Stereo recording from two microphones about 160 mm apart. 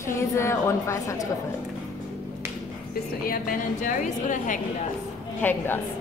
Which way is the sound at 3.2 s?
65° left (ahead or behind).